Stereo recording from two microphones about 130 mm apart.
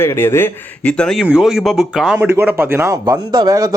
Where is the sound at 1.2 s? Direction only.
5° right (ahead or behind).